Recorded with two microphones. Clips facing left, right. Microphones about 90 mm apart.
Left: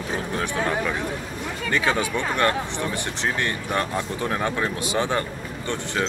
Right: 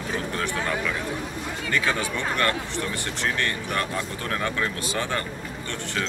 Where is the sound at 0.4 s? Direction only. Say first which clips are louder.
Left 4 dB; 25° left (ahead or behind).